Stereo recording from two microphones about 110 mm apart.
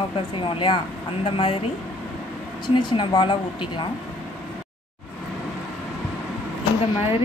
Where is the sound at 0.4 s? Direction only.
50° left (ahead or behind).